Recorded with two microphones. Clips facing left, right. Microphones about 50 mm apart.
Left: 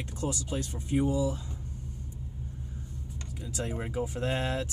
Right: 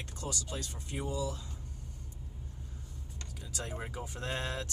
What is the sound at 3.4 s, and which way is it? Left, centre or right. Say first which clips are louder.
Speech: left 6 dB; centre.